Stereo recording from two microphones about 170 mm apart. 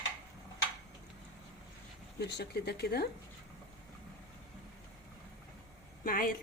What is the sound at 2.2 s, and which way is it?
Speech, 80° left.